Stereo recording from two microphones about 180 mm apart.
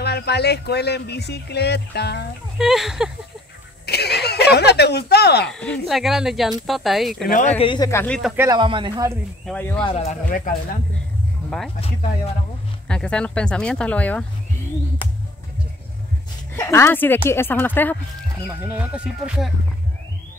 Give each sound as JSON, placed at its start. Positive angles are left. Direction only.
{"t": 0.0, "sound": "speech", "side_deg": 65}
{"t": 2.6, "sound": "speech", "side_deg": 0}
{"t": 3.8, "sound": "a sound", "side_deg": 65}
{"t": 5.5, "sound": "speech", "side_deg": 5}
{"t": 7.2, "sound": "speech", "side_deg": 50}
{"t": 7.5, "sound": "speech", "side_deg": 25}
{"t": 7.9, "sound": "speech", "side_deg": 10}
{"t": 8.4, "sound": "speech", "side_deg": -25}
{"t": 9.5, "sound": "speech", "side_deg": 10}
{"t": 9.8, "sound": "speech", "side_deg": 40}
{"t": 12.8, "sound": "speech", "side_deg": 5}
{"t": 16.5, "sound": "speech", "side_deg": 15}
{"t": 18.5, "sound": "speech", "side_deg": -10}